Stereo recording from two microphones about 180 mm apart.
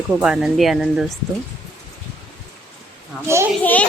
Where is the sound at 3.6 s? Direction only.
10° left (ahead or behind).